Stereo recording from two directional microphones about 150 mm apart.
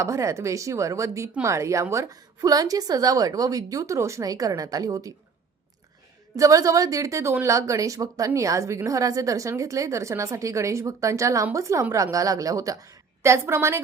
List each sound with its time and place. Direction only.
0.0 s speech: 20° right (ahead or behind)
6.3 s speech: 20° right (ahead or behind)